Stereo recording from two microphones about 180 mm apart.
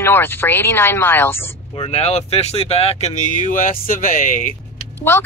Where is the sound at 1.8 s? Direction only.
35° left (ahead or behind).